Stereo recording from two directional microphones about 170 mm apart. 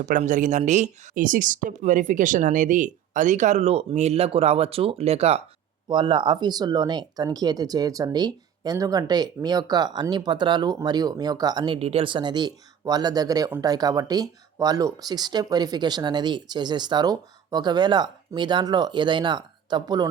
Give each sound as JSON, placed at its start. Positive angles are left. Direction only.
{"t": 0.0, "sound": "speech", "side_deg": -45}